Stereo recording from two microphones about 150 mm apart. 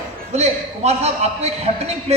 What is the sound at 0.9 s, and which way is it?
A man's voice, 45° right (ahead or behind).